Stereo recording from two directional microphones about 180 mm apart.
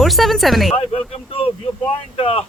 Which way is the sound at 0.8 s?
30° left (ahead or behind).